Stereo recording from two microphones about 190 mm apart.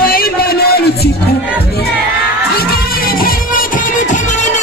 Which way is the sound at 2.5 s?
50° left (ahead or behind).